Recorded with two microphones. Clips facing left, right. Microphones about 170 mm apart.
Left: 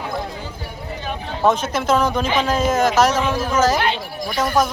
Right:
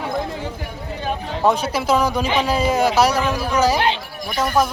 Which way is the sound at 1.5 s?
10° right (ahead or behind).